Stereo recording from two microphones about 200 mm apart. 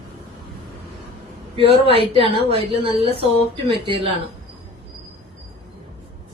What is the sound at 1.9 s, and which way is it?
Speech, 30° right (ahead or behind).